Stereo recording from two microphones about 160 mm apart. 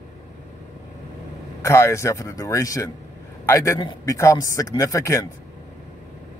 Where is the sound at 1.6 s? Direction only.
15° left (ahead or behind).